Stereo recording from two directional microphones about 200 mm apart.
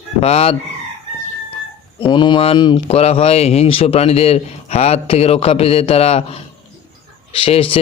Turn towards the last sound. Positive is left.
turn(degrees=30)  # may be behind; listen again after turning